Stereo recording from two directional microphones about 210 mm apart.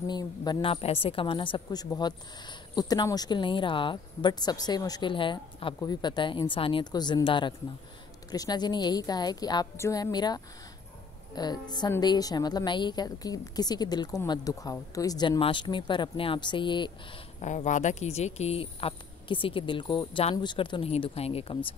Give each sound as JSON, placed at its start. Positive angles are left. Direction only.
{"t": 0.0, "sound": "a woman's voice", "side_deg": 20}
{"t": 17.4, "sound": "a woman's voice", "side_deg": 35}